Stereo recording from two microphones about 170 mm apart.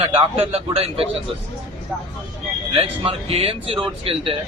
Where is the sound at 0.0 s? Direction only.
35° right (ahead or behind).